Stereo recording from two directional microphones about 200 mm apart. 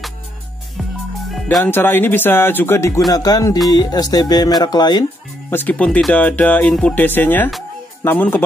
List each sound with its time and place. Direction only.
1.3 s music: centre (ahead or behind)
1.7 s speech: 10° left (ahead or behind)
5.5 s speech: 10° left (ahead or behind)